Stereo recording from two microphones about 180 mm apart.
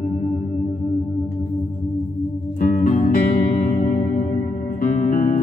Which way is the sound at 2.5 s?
45° left (ahead or behind).